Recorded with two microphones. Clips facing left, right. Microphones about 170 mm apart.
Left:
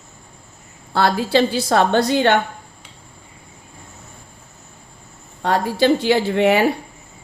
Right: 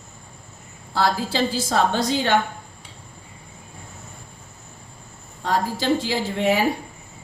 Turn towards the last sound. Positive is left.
turn(degrees=65)  # may be behind; listen again after turning